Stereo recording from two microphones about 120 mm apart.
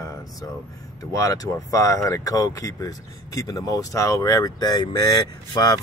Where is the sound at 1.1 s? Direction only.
30° left (ahead or behind).